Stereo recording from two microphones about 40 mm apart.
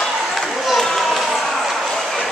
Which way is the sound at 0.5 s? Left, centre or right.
Centre.